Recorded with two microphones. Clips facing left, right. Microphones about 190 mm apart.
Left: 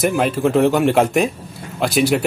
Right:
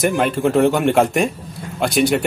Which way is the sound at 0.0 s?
Centre (ahead or behind).